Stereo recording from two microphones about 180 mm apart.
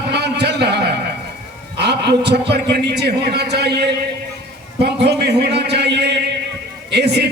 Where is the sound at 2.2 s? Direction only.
70° right (ahead or behind).